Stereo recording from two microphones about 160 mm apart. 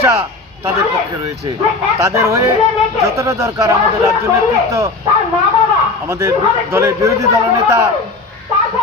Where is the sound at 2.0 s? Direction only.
20° right (ahead or behind).